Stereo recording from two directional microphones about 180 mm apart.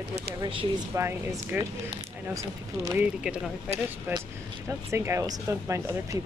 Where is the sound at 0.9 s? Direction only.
15° right (ahead or behind).